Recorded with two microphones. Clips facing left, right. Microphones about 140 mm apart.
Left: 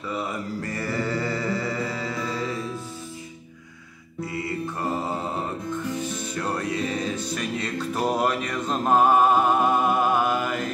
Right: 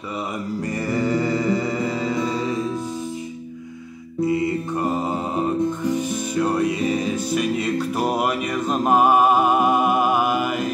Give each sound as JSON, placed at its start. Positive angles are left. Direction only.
{"t": 0.7, "sound": "music", "side_deg": -15}
{"t": 4.2, "sound": "music", "side_deg": -20}